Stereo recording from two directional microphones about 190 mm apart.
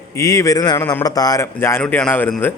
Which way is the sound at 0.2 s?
15° left (ahead or behind).